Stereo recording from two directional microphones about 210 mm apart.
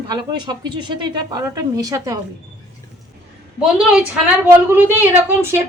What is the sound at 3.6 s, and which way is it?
A woman's voice, 5° right (ahead or behind).